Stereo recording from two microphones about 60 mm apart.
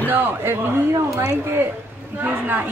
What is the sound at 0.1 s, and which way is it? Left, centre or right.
Speech, right.